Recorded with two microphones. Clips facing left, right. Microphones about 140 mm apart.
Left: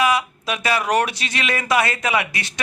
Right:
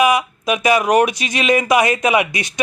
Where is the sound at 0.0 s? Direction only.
15° right (ahead or behind).